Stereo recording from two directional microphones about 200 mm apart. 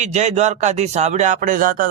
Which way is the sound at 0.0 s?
35° right (ahead or behind).